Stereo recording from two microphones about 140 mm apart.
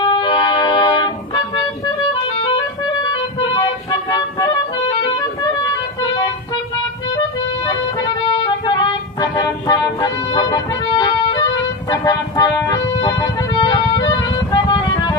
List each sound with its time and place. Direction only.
0.0 s music: 35° left (ahead or behind)
3.0 s music: 35° left (ahead or behind)
7.6 s music: 35° left (ahead or behind)